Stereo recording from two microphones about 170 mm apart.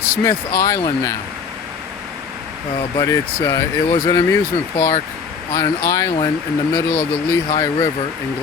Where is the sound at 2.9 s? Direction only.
20° left (ahead or behind).